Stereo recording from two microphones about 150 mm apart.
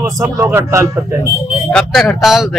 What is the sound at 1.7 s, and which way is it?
Speech, 5° left (ahead or behind).